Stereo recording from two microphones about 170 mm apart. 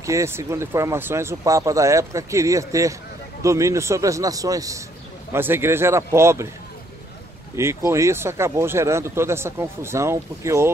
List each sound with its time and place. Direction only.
0.0 s a man's voice: 15° right (ahead or behind)
7.5 s speech: 15° right (ahead or behind)